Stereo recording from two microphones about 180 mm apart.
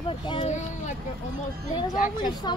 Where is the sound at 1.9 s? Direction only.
45° left (ahead or behind).